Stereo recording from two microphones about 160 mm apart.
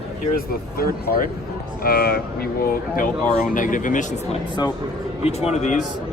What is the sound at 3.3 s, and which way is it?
Speech, 55° left (ahead or behind).